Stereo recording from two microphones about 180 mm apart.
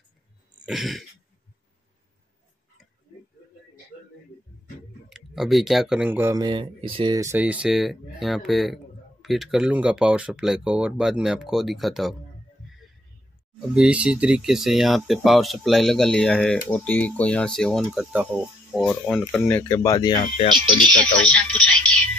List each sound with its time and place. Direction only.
0.7 s speech: centre (ahead or behind)
5.1 s speech: centre (ahead or behind)
6.3 s speech: 25° right (ahead or behind); by 12.2 s centre (ahead or behind)
13.6 s speech: 5° right (ahead or behind)
19.4 s speech: 15° left (ahead or behind)
20.5 s speech: 5° left (ahead or behind)